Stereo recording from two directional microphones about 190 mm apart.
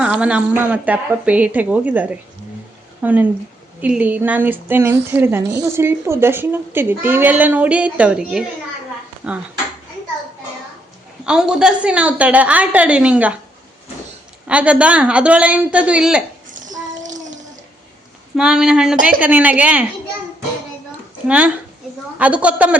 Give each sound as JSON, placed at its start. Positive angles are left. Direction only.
{"t": 0.0, "sound": "a woman's voice", "side_deg": -5}
{"t": 11.3, "sound": "a woman's voice", "side_deg": -5}
{"t": 14.4, "sound": "a woman's voice", "side_deg": -5}
{"t": 16.5, "sound": "child singing", "side_deg": -40}
{"t": 18.3, "sound": "a woman's voice", "side_deg": -5}
{"t": 21.2, "sound": "a woman's voice", "side_deg": -5}